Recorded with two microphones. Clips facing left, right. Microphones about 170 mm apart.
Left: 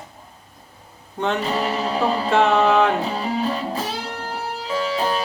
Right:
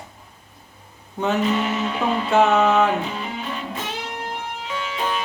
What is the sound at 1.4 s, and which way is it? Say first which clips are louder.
Music: right 1 dB; 35° left (ahead or behind).